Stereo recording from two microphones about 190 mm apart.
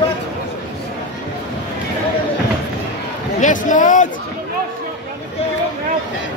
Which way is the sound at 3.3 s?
40° left (ahead or behind).